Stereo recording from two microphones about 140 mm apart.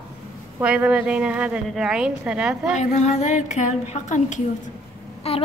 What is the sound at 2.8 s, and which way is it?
A woman's voice, 55° left (ahead or behind).